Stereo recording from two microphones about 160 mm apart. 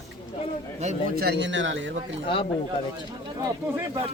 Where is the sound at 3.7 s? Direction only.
20° right (ahead or behind).